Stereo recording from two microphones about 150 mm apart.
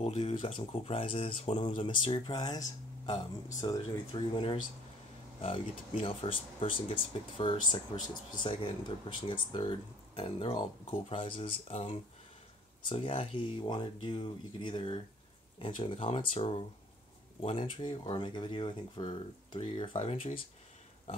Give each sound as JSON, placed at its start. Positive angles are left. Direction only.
{"t": 0.0, "sound": "speech", "side_deg": 40}
{"t": 3.6, "sound": "speech", "side_deg": 25}